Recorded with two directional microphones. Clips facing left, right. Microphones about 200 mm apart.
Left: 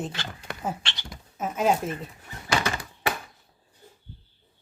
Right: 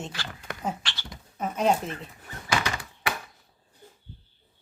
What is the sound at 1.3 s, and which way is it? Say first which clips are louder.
Speech: even; 5° left (ahead or behind).